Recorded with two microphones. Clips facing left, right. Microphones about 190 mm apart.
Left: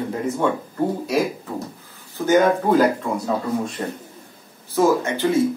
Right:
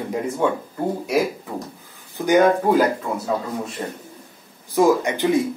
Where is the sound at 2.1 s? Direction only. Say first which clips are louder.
Right 1 dB; 15° right (ahead or behind).